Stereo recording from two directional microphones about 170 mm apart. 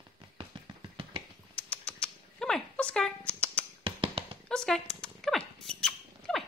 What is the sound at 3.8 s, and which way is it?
Tap, 30° right (ahead or behind).